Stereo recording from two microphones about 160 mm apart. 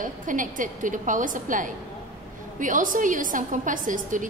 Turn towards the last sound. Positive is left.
turn(degrees=-55)  # may be behind; listen again after turning